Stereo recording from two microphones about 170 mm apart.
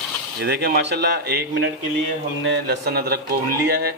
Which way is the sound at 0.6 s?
70° right (ahead or behind).